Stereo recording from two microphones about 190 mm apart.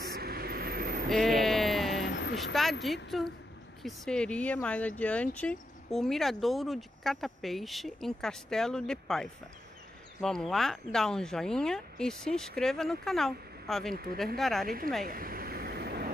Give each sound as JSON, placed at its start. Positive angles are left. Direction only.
{"t": 0.0, "sound": "vehicle", "side_deg": -55}
{"t": 1.0, "sound": "a sound", "side_deg": 0}
{"t": 2.0, "sound": "vehicle", "side_deg": 65}
{"t": 2.3, "sound": "speech", "side_deg": 0}
{"t": 15.0, "sound": "vehicle", "side_deg": -50}